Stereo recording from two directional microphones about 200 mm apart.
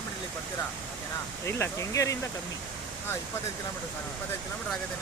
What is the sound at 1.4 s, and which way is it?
Speech, 15° left (ahead or behind).